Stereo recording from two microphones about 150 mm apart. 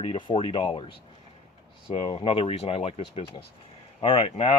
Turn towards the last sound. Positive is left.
turn(degrees=40)  # may be behind; listen again after turning